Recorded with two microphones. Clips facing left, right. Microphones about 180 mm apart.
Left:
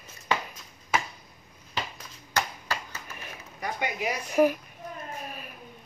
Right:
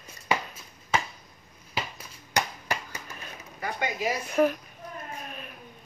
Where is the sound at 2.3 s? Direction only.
15° right (ahead or behind).